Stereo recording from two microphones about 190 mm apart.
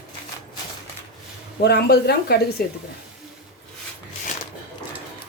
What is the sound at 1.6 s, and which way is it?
Speech, 55° left (ahead or behind).